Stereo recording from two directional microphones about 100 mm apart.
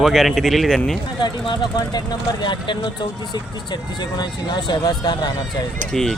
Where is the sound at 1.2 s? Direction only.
45° left (ahead or behind).